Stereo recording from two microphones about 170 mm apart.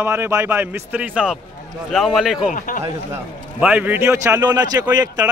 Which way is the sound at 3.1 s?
10° right (ahead or behind).